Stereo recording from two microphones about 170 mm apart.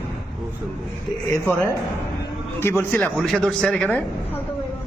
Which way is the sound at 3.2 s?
5° left (ahead or behind).